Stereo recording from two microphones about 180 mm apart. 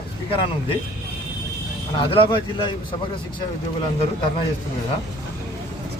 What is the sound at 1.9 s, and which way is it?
Speech, 30° left (ahead or behind).